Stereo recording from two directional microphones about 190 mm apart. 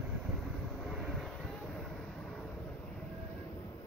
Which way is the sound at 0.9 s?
Centre (ahead or behind).